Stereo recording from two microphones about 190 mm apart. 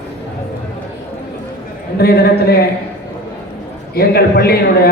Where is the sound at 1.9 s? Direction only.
55° left (ahead or behind).